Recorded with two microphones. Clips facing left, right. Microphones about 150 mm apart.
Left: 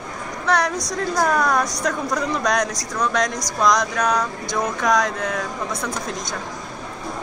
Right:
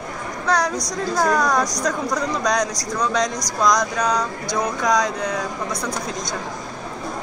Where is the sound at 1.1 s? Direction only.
5° left (ahead or behind).